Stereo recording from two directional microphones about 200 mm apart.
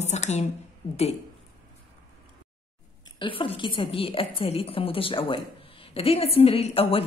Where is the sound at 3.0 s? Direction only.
25° left (ahead or behind).